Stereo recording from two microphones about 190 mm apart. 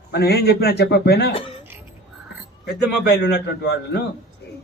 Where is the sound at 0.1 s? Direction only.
55° left (ahead or behind).